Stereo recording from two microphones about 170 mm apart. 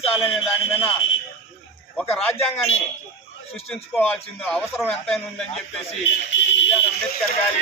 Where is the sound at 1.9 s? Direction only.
5° left (ahead or behind).